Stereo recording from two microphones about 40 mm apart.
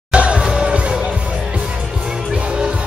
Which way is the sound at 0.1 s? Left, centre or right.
Right.